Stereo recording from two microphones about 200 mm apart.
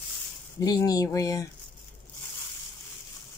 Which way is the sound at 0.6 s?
20° left (ahead or behind).